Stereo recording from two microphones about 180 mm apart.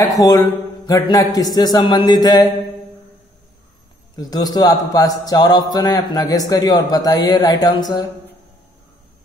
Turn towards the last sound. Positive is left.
turn(degrees=20)  # may be behind; listen again after turning